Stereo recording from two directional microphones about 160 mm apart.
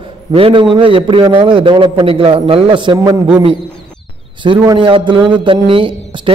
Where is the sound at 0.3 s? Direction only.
35° right (ahead or behind).